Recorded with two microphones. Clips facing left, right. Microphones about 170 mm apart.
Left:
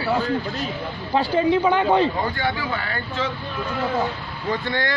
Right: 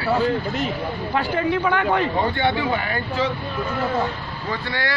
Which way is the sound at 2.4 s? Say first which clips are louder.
Right 4 dB; 20° right (ahead or behind).